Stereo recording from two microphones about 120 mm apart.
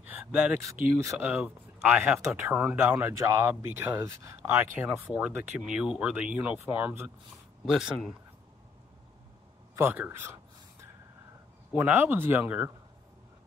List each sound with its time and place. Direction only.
0.0 s a sound: 10° right (ahead or behind)
0.6 s speech: 25° right (ahead or behind)
1.3 s speech: 10° right (ahead or behind)
2.1 s speech: 20° right (ahead or behind)
7.6 s speech: 5° right (ahead or behind)
9.8 s speech: 15° right (ahead or behind)
11.7 s speech: 15° right (ahead or behind)